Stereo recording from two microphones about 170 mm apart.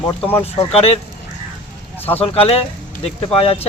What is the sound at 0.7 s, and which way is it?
Speech, 35° left (ahead or behind).